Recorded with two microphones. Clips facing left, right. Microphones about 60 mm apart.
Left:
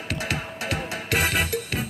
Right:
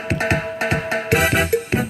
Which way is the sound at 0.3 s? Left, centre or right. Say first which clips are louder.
Right 9 dB; right.